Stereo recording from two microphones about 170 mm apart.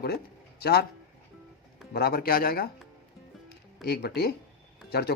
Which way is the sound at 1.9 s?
65° left (ahead or behind).